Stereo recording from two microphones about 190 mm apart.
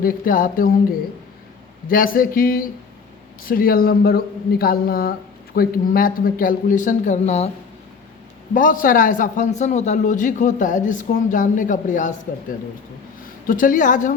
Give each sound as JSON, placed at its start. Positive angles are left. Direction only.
{"t": 0.0, "sound": "speech", "side_deg": 45}
{"t": 1.9, "sound": "speech", "side_deg": 50}
{"t": 8.5, "sound": "speech", "side_deg": 45}